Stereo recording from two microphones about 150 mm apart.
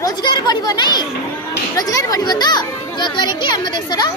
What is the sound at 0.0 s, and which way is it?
Chatter, 30° left (ahead or behind).